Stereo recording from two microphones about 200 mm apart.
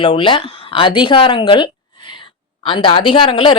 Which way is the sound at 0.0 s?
25° left (ahead or behind).